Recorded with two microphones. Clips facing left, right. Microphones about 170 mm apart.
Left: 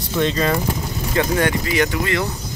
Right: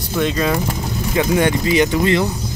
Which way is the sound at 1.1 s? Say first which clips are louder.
Right 2 dB; 20° right (ahead or behind).